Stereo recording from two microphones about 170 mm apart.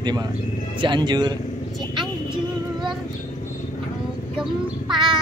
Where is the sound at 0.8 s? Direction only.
25° right (ahead or behind).